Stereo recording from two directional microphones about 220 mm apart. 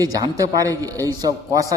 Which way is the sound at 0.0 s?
15° right (ahead or behind).